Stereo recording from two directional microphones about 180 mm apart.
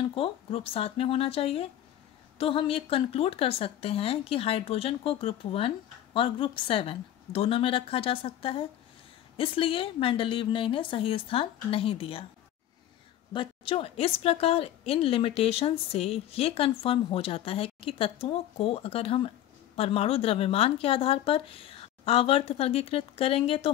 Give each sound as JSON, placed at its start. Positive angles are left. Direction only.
{"t": 0.1, "sound": "a woman's voice", "side_deg": 30}
{"t": 13.3, "sound": "speech", "side_deg": 30}